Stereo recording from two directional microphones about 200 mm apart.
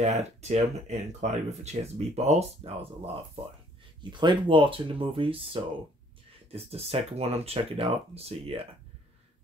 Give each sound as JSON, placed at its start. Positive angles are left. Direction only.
{"t": 0.0, "sound": "speech", "side_deg": -35}
{"t": 4.1, "sound": "speech", "side_deg": -20}